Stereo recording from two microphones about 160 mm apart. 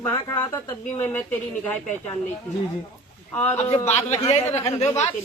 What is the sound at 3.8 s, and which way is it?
Speech, 40° left (ahead or behind).